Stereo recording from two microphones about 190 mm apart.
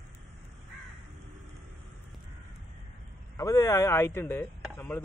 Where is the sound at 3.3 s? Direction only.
15° left (ahead or behind).